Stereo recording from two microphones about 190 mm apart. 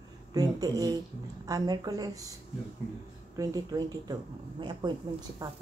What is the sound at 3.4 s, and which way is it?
A woman's voice, 20° right (ahead or behind).